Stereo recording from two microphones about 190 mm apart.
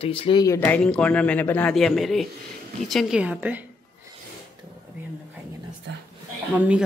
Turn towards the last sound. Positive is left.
turn(degrees=-5)  # may be behind; listen again after turning